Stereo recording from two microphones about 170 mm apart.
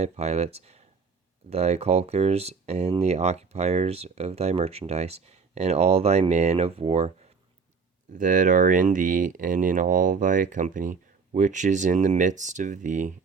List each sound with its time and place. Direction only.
0.0 s speech: 40° right (ahead or behind)
8.1 s speech: 50° right (ahead or behind)